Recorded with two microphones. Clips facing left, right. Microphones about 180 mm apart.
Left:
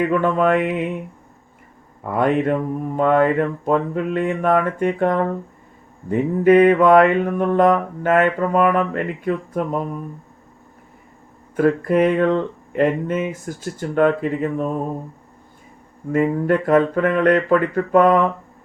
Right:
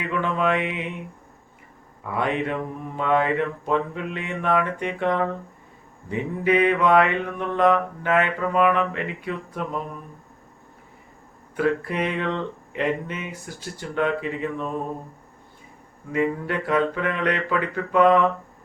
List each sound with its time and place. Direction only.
0.0 s mantra: 45° left (ahead or behind)
2.0 s mantra: 45° left (ahead or behind)
11.5 s mantra: 45° left (ahead or behind)
16.1 s mantra: 45° left (ahead or behind)